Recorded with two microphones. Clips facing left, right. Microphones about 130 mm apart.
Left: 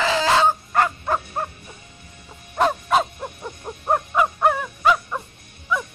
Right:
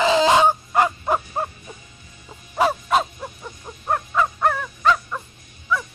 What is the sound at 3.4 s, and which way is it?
Crow, 20° left (ahead or behind).